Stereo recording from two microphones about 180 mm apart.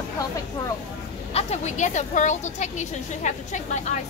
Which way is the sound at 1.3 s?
40° left (ahead or behind).